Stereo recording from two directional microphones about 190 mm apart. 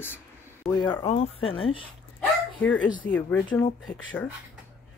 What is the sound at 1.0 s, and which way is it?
Speech, 35° left (ahead or behind).